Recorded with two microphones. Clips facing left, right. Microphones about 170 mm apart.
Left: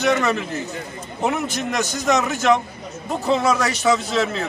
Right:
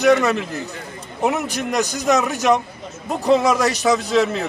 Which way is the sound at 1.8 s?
15° right (ahead or behind).